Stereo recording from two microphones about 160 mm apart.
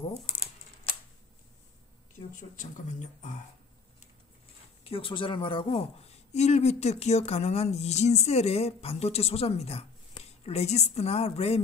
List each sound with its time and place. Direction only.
2.5 s speech: 50° left (ahead or behind)
4.8 s a man's voice: 35° left (ahead or behind)